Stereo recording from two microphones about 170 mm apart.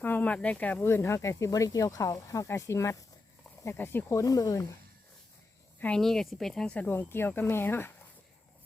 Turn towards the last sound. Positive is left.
turn(degrees=15)  # may be behind; listen again after turning